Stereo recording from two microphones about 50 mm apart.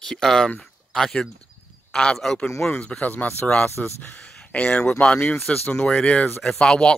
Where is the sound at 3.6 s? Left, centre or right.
Left.